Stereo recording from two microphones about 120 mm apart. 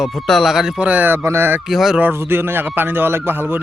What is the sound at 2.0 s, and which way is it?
A man's voice, 20° right (ahead or behind).